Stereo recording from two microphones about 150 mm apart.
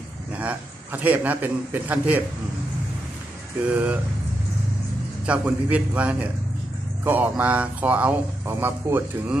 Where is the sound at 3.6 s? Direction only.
10° right (ahead or behind).